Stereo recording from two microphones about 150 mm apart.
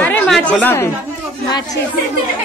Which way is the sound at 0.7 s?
15° left (ahead or behind).